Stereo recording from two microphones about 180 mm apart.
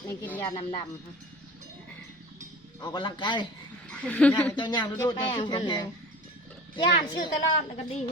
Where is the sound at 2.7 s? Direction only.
25° left (ahead or behind).